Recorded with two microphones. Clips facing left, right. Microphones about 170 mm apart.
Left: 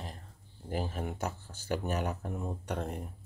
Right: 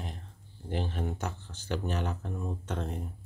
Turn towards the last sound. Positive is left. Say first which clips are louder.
# even
turn(degrees=5)  # may be behind; listen again after turning